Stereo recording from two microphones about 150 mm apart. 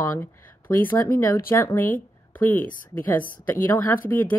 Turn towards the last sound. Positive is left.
turn(degrees=10)  # may be behind; listen again after turning